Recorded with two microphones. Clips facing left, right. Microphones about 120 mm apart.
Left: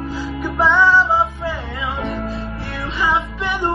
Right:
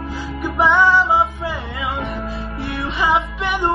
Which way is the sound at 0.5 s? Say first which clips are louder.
Even; 20° right (ahead or behind).